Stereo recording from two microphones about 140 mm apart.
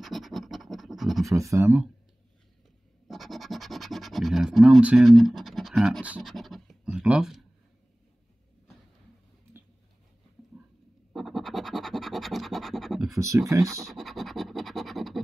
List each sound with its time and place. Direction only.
0.0 s scratch: centre (ahead or behind)
1.5 s speech: 15° right (ahead or behind)
3.1 s speech: centre (ahead or behind)
5.1 s scratch: centre (ahead or behind)
6.9 s speech: 5° right (ahead or behind)
10.6 s a sound: 10° right (ahead or behind)
11.1 s scratch: centre (ahead or behind)
13.2 s speech: 20° right (ahead or behind)
13.8 s scratch: centre (ahead or behind)